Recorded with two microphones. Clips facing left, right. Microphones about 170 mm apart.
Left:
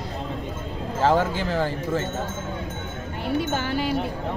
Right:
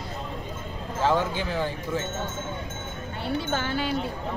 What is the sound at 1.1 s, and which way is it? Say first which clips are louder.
Speech: left 3 dB; 45° left (ahead or behind).